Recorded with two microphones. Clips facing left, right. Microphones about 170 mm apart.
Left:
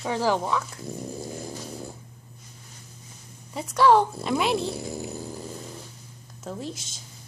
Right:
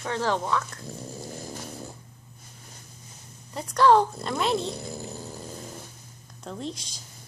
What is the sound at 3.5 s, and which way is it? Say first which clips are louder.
Speech: even; 5° left (ahead or behind).